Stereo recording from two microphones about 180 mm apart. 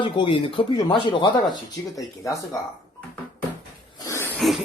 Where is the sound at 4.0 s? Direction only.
15° left (ahead or behind).